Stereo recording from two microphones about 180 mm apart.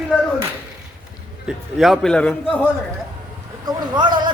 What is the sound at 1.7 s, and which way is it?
Speech, centre (ahead or behind).